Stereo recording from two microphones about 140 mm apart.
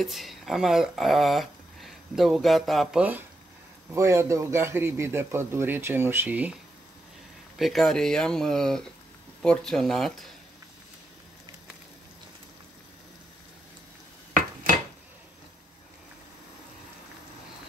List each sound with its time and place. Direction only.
0.0 s speech: centre (ahead or behind)
3.9 s a man's voice: 20° right (ahead or behind)
7.5 s speech: centre (ahead or behind)
14.3 s dishes: 80° right